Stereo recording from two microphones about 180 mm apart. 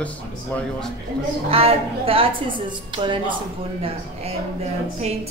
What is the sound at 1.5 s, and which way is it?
A woman's voice, 30° right (ahead or behind).